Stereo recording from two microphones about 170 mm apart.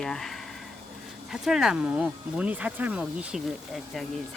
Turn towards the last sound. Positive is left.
turn(degrees=0)  # may be behind; listen again after turning